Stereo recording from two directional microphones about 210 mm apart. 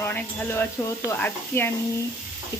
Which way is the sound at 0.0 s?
10° left (ahead or behind).